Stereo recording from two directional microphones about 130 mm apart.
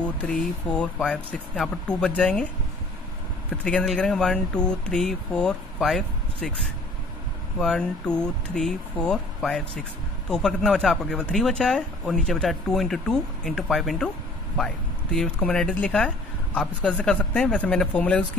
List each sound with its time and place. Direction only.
0.0 s speech: 10° left (ahead or behind)
3.6 s speech: 5° left (ahead or behind)
7.5 s speech: 5° left (ahead or behind)
15.1 s speech: 5° left (ahead or behind)